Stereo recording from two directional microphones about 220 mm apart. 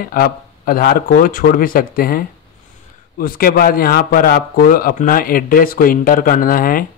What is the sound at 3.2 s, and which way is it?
A man's voice, 40° left (ahead or behind).